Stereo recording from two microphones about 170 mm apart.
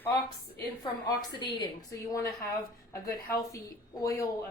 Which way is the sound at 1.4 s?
25° left (ahead or behind).